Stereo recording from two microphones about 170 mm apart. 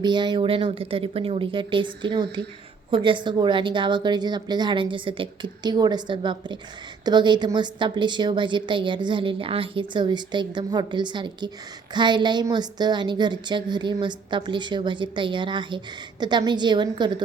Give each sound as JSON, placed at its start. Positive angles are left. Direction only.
{"t": 0.0, "sound": "a woman's voice", "side_deg": -25}